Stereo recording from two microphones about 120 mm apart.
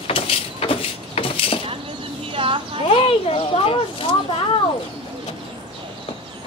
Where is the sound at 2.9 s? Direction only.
55° left (ahead or behind).